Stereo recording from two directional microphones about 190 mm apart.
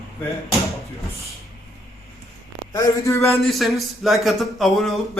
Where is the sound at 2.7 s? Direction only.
15° left (ahead or behind).